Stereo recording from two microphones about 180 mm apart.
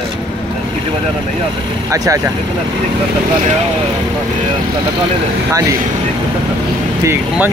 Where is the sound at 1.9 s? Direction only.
20° right (ahead or behind).